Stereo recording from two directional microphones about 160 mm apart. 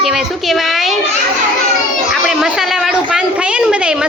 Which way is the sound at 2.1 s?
Centre (ahead or behind).